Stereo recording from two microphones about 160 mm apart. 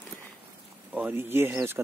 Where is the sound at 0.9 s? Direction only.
10° right (ahead or behind).